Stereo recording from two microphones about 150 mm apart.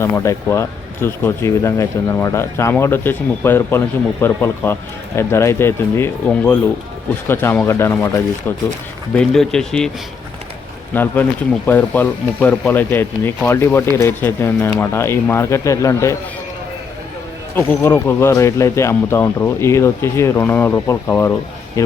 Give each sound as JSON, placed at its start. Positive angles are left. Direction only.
{"t": 0.0, "sound": "speech", "side_deg": 20}
{"t": 9.1, "sound": "speech", "side_deg": 5}
{"t": 10.9, "sound": "speech", "side_deg": 10}
{"t": 17.5, "sound": "speech", "side_deg": 15}